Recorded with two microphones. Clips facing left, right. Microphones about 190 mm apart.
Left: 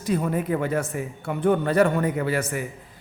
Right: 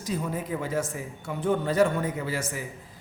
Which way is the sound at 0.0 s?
60° left (ahead or behind).